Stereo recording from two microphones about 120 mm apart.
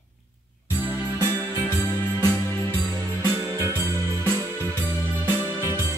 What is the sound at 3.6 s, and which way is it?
Music, 20° right (ahead or behind).